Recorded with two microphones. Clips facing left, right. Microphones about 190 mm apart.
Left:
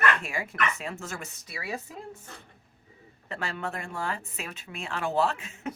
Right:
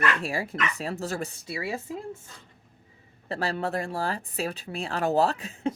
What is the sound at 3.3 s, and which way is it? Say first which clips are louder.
Speech: right 5 dB; 35° right (ahead or behind).